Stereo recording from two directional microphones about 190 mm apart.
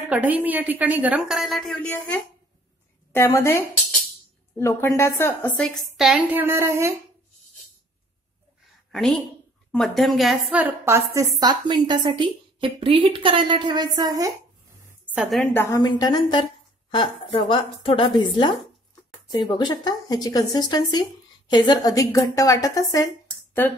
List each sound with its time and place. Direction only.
0.1 s a woman's voice: 10° right (ahead or behind); by 3.5 s 10° left (ahead or behind)
4.6 s a woman's voice: 15° left (ahead or behind); by 6.9 s 15° right (ahead or behind)
8.9 s a woman's voice: centre (ahead or behind); by 14.3 s 20° right (ahead or behind)
15.0 s a woman's voice: 5° right (ahead or behind)
15.5 s speech: 15° left (ahead or behind)